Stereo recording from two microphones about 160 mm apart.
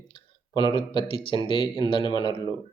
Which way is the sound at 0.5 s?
30° left (ahead or behind).